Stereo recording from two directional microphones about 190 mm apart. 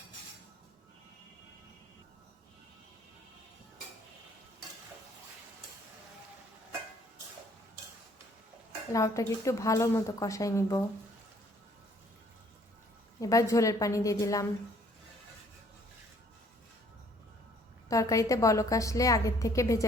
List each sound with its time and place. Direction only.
8.9 s a woman's voice: 15° left (ahead or behind)
13.1 s a woman's voice: 15° left (ahead or behind)
17.8 s a woman's voice: 15° left (ahead or behind)